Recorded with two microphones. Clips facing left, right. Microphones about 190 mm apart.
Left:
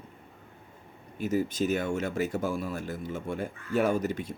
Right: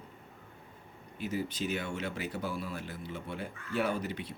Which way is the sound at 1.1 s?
45° left (ahead or behind).